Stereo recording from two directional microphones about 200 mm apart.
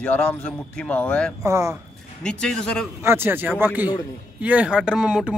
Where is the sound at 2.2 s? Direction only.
5° left (ahead or behind).